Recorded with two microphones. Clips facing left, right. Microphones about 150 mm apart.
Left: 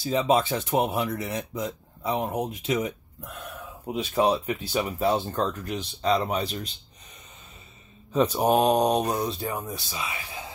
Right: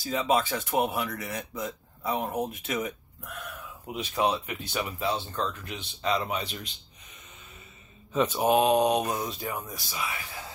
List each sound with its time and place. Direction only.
0.0 s speech: 25° left (ahead or behind)
3.8 s speech: 35° left (ahead or behind)
8.1 s speech: 35° left (ahead or behind); by 10.5 s 20° left (ahead or behind)